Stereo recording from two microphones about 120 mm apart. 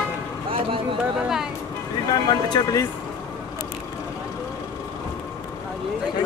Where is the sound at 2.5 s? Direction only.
30° left (ahead or behind).